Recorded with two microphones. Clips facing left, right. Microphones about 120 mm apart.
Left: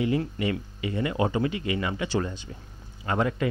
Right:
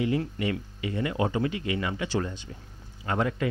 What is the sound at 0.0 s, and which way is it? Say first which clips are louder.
Speech: left 1 dB; 20° left (ahead or behind).